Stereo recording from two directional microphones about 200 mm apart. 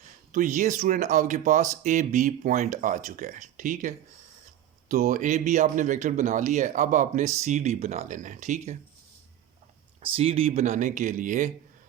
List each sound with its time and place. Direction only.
0.3 s speech: 40° right (ahead or behind)
10.0 s speech: 30° right (ahead or behind)